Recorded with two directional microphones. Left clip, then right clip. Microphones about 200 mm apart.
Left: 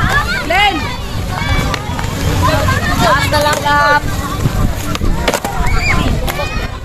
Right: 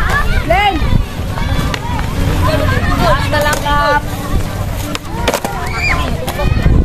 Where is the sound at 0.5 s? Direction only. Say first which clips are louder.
Right 1 dB; 15° left (ahead or behind).